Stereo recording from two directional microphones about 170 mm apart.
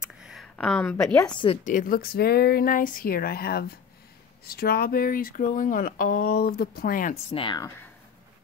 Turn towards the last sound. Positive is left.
turn(degrees=30)  # may be behind; listen again after turning